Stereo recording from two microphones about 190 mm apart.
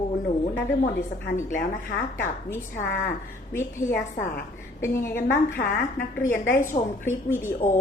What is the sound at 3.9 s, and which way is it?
Speech, 55° left (ahead or behind).